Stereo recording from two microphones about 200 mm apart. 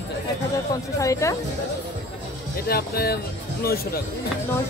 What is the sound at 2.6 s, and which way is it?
Speech, 50° left (ahead or behind).